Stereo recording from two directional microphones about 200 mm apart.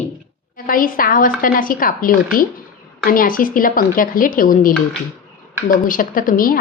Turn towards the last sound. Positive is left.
turn(degrees=45)  # may be behind; listen again after turning